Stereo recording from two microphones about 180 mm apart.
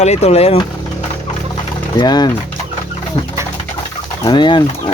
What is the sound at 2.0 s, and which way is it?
Speech, 25° left (ahead or behind).